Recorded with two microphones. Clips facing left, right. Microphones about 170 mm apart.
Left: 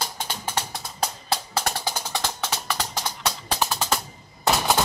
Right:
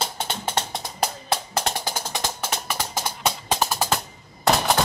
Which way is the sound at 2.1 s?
15° right (ahead or behind).